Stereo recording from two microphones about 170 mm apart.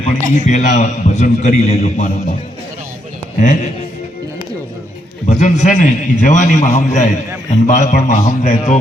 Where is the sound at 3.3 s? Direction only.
45° left (ahead or behind).